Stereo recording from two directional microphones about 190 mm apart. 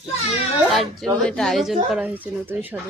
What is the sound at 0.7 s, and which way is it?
A woman's voice, centre (ahead or behind).